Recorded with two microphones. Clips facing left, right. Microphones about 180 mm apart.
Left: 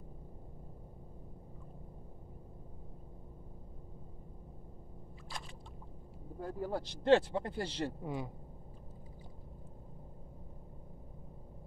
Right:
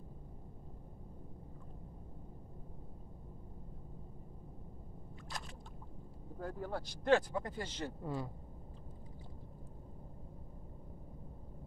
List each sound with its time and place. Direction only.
6.4 s speech: 10° left (ahead or behind)
6.8 s speech: 30° left (ahead or behind)
8.0 s speech: 15° left (ahead or behind)